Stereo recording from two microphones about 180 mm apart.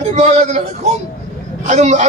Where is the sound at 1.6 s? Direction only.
40° right (ahead or behind).